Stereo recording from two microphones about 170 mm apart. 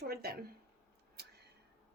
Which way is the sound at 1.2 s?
75° right (ahead or behind).